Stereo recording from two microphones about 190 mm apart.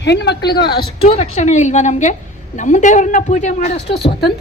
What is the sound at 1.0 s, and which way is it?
A woman's voice, 35° left (ahead or behind).